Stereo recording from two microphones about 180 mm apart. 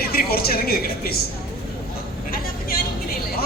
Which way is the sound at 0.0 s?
60° left (ahead or behind).